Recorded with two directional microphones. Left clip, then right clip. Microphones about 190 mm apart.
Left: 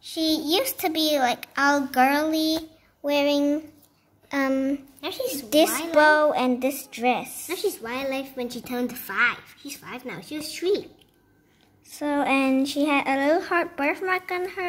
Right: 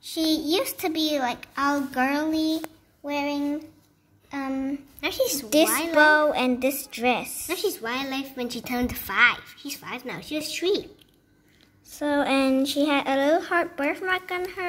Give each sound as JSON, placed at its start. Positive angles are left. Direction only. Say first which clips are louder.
{"t": 0.0, "sound": "a child's voice", "louder": "even", "side_deg": -5}
{"t": 3.0, "sound": "a sound", "louder": "left 6 dB", "side_deg": 25}
{"t": 5.0, "sound": "a woman's voice", "louder": "right 6 dB", "side_deg": -30}
{"t": 5.9, "sound": "a child's voice", "louder": "even", "side_deg": 10}
{"t": 7.4, "sound": "a woman's voice", "louder": "right 1 dB", "side_deg": -25}
{"t": 11.9, "sound": "a woman's voice", "louder": "even", "side_deg": 5}